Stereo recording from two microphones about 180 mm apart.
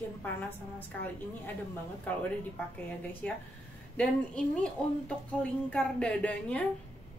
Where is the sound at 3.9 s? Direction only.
5° left (ahead or behind).